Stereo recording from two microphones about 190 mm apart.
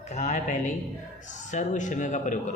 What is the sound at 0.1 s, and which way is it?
Speech, 40° left (ahead or behind).